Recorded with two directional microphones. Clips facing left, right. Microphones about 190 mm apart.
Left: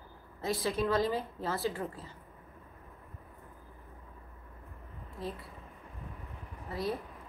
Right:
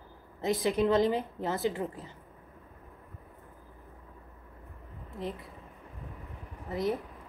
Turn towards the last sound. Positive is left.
turn(degrees=-20)  # may be behind; listen again after turning